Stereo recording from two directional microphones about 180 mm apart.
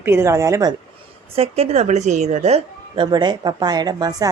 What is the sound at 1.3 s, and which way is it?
A woman's voice, 35° right (ahead or behind).